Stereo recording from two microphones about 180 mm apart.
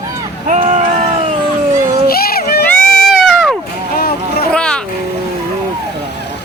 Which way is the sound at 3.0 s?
Centre (ahead or behind).